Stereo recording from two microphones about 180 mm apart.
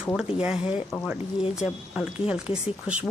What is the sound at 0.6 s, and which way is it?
Speech, 30° left (ahead or behind).